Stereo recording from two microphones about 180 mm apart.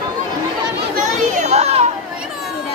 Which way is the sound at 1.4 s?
40° right (ahead or behind).